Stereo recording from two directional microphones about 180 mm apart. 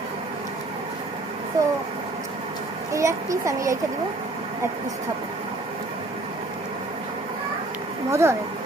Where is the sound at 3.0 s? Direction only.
15° right (ahead or behind).